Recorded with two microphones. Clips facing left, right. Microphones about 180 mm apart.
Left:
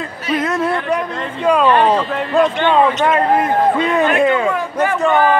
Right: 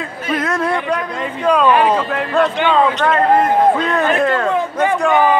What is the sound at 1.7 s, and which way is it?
A man's voice, 5° right (ahead or behind).